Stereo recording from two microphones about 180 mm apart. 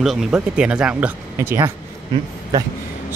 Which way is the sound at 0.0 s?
5° right (ahead or behind).